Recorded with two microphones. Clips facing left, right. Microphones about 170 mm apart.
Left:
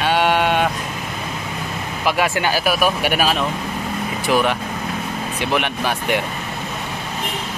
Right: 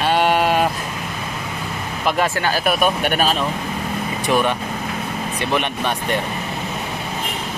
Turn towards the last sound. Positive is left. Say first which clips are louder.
# left 1 dB
turn(degrees=5)  # may be behind; listen again after turning